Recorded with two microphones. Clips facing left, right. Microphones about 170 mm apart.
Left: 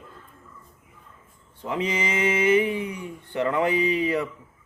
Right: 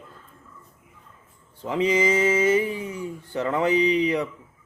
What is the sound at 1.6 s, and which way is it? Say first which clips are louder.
Speech: right 4 dB; 30° right (ahead or behind).